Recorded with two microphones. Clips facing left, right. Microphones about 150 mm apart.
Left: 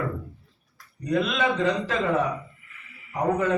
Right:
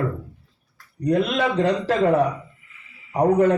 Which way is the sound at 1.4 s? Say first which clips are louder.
Right 3 dB; 35° right (ahead or behind).